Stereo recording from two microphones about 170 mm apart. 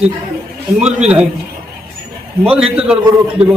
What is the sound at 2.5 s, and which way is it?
Speech, 5° right (ahead or behind).